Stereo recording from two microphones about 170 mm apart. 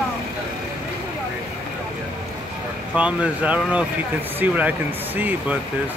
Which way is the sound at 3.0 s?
5° right (ahead or behind).